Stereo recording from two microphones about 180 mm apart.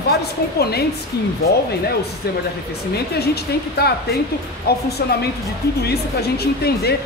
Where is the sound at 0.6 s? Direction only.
60° left (ahead or behind).